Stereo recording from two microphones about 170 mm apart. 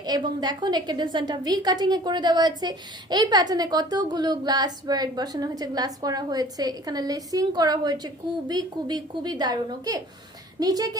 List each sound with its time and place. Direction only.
0.0 s a woman's voice: 25° right (ahead or behind)